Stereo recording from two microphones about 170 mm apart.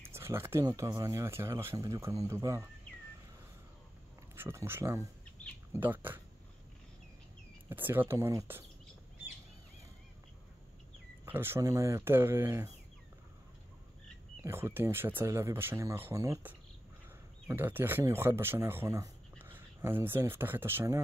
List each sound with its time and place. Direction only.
0.0 s speech: 15° right (ahead or behind)
4.4 s speech: 15° right (ahead or behind)
7.7 s speech: 10° right (ahead or behind)
11.2 s speech: 15° right (ahead or behind)
14.4 s speech: 15° right (ahead or behind)